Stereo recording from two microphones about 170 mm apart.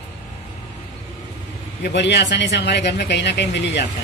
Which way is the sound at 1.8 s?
85° left.